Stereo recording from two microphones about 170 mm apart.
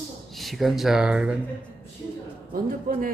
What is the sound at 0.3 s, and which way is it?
Speech, centre (ahead or behind).